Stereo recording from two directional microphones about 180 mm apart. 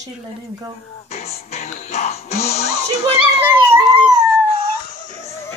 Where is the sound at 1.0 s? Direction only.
35° left (ahead or behind).